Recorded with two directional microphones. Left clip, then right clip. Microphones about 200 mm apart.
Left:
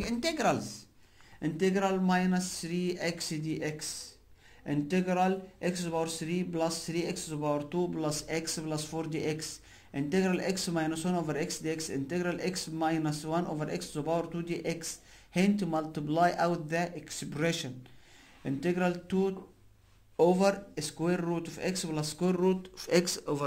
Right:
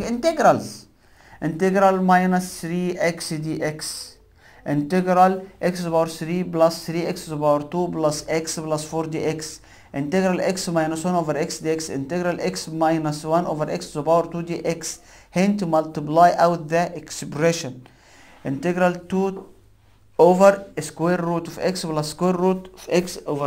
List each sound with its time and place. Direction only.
0.0 s speech: centre (ahead or behind)
0.6 s speech: 15° left (ahead or behind)
1.7 s speech: 10° right (ahead or behind)
5.1 s speech: centre (ahead or behind)
22.6 s speech: 25° left (ahead or behind)